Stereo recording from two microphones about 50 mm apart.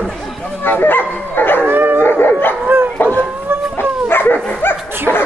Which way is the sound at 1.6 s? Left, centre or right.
Right.